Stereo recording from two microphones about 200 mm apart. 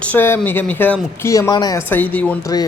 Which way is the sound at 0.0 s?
10° left (ahead or behind).